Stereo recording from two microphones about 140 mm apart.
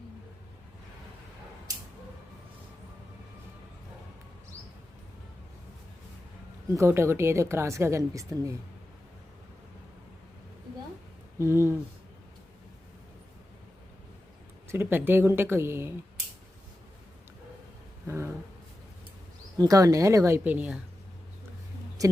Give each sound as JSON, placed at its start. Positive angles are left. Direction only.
{"t": 6.7, "sound": "a woman's voice", "side_deg": -20}
{"t": 11.3, "sound": "a woman's voice", "side_deg": -20}
{"t": 14.7, "sound": "speech", "side_deg": -15}
{"t": 18.0, "sound": "a sound", "side_deg": -20}
{"t": 19.5, "sound": "a woman's voice", "side_deg": -25}
{"t": 22.0, "sound": "speech", "side_deg": -25}